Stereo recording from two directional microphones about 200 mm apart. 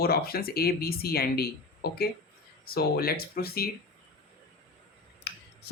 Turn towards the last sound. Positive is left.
turn(degrees=55)  # may be behind; listen again after turning